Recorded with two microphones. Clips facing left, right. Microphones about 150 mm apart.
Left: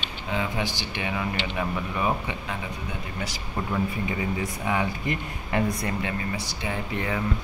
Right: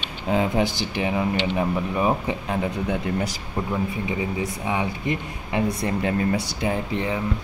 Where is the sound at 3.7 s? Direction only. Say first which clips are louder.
Right 1 dB; 20° right (ahead or behind).